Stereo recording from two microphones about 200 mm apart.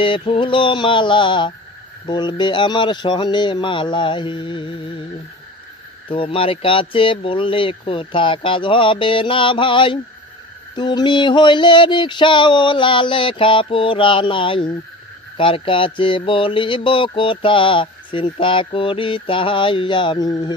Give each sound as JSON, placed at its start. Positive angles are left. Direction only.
{"t": 0.0, "sound": "speech", "side_deg": 25}
{"t": 6.0, "sound": "speech", "side_deg": 25}